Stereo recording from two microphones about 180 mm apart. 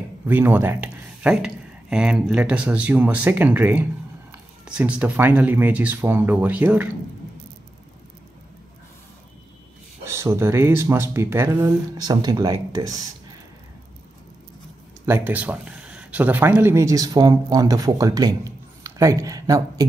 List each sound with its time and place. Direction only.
0.3 s speech: 10° right (ahead or behind)
10.0 s speech: 15° right (ahead or behind)
15.0 s speech: 10° right (ahead or behind)